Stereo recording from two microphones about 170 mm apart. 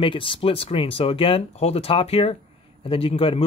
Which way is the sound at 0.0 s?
30° left (ahead or behind).